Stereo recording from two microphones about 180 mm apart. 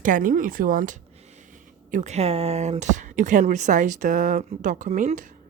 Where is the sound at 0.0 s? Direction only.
50° right (ahead or behind).